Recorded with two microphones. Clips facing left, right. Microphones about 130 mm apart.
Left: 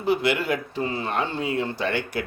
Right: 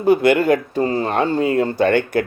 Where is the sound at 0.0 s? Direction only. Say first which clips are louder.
Right 9 dB; 50° right (ahead or behind).